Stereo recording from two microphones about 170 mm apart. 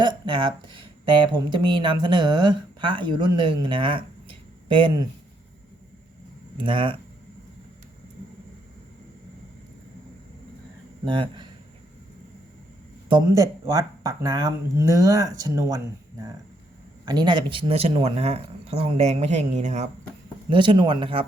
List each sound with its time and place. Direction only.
0.0 s speech: 30° right (ahead or behind)
6.6 s speech: 30° right (ahead or behind)
11.0 s speech: 30° right (ahead or behind)
13.1 s speech: 25° right (ahead or behind); by 19.9 s 40° right (ahead or behind)
20.5 s speech: 30° right (ahead or behind)